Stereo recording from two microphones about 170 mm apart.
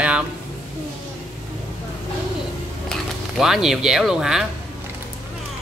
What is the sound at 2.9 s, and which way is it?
Speech, centre (ahead or behind).